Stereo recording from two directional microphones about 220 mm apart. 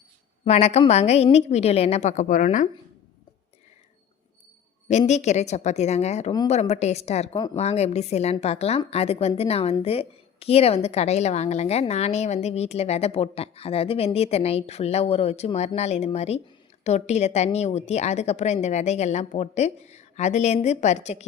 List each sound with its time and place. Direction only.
0.4 s a woman's voice: 30° left (ahead or behind)
4.9 s a woman's voice: 30° left (ahead or behind)